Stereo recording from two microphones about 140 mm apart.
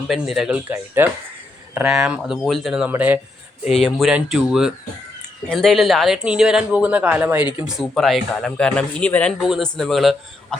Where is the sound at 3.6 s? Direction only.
Centre (ahead or behind).